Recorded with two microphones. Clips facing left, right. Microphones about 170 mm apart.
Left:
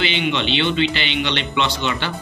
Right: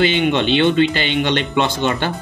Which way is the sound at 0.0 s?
50° right (ahead or behind).